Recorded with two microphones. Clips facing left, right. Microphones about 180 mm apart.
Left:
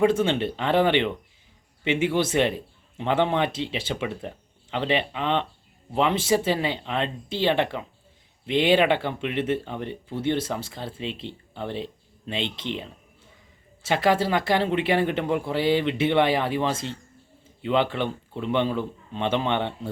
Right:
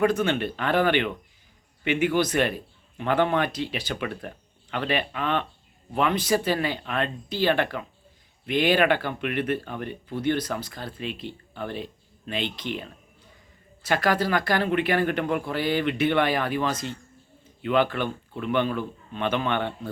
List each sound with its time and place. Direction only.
0.0 s speech: 25° left (ahead or behind)
17.4 s a sound: 25° left (ahead or behind)
17.9 s speech: 25° left (ahead or behind)